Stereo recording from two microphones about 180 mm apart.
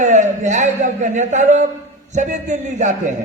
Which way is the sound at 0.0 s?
45° right (ahead or behind).